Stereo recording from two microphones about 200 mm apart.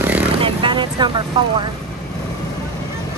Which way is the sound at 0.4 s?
25° right (ahead or behind).